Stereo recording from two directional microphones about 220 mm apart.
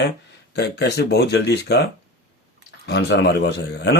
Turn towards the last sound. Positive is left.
turn(degrees=50)  # may be behind; listen again after turning